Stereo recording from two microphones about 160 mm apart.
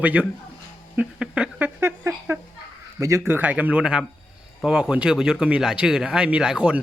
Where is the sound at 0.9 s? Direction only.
5° right (ahead or behind).